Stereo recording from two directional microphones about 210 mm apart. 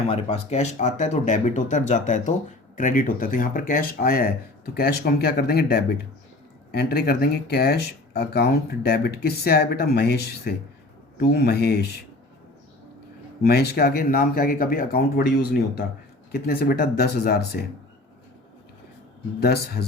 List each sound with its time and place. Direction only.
0.1 s speech: 30° left (ahead or behind); by 11.9 s 50° left (ahead or behind)
13.4 s speech: 50° left (ahead or behind)
19.4 s speech: 50° left (ahead or behind)